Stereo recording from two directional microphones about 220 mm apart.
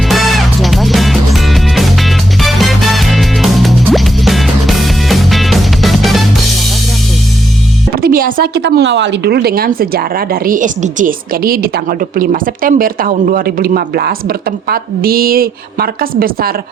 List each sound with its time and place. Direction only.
0.1 s music: centre (ahead or behind)
7.9 s music: 40° right (ahead or behind)
8.7 s speech: 55° right (ahead or behind)